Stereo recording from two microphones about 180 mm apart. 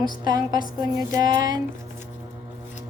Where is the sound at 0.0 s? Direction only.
20° right (ahead or behind).